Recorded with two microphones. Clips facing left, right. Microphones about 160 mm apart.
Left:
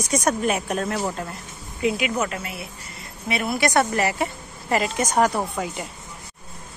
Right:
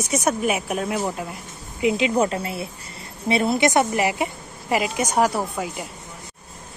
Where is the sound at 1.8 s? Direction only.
20° right (ahead or behind); by 5.8 s 5° right (ahead or behind).